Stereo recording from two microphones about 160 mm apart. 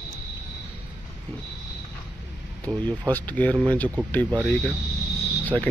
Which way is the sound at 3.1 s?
10° left (ahead or behind).